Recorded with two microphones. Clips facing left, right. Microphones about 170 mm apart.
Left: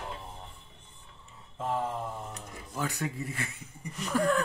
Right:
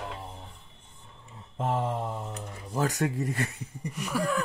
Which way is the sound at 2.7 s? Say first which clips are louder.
Right 6 dB; 40° right (ahead or behind).